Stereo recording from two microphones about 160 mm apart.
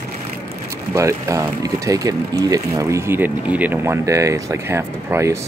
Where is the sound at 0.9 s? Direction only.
20° right (ahead or behind).